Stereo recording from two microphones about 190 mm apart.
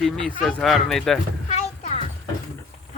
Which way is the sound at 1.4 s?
35° left (ahead or behind).